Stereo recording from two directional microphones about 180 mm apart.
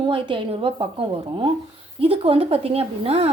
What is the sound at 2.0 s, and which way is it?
A woman's voice, 30° right (ahead or behind).